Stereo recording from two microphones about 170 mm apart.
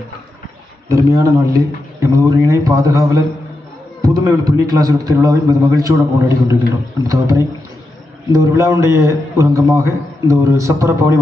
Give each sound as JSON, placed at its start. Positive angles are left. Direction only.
{"t": 0.8, "sound": "a man's voice", "side_deg": -20}